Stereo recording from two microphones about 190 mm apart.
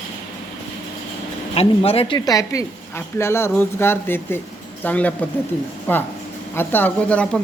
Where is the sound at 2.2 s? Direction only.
20° left (ahead or behind).